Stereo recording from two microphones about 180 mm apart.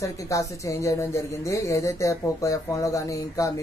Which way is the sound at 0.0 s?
15° left (ahead or behind).